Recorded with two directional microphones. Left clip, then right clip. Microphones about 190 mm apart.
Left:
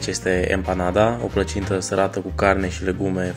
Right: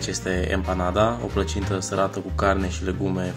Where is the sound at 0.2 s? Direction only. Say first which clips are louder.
Left 7 dB; 15° left (ahead or behind).